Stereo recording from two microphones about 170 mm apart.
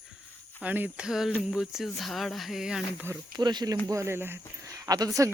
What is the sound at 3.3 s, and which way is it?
Speech, 25° right (ahead or behind).